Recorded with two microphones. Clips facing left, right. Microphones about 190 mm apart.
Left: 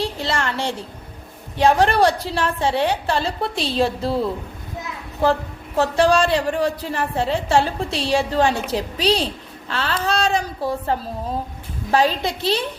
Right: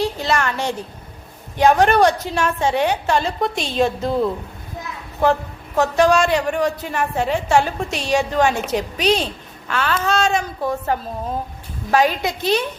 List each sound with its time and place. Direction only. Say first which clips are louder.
0.0 s a sound: right 3 dB; 25° left (ahead or behind)
1.5 s a woman's voice: right 2 dB; 30° left (ahead or behind)
5.2 s a woman's voice: right 1 dB; 30° left (ahead or behind)